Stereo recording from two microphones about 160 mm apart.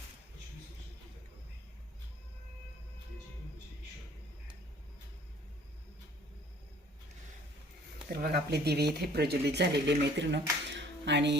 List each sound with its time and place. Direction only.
8.1 s speech: 75° right (ahead or behind)
10.7 s music: 90° right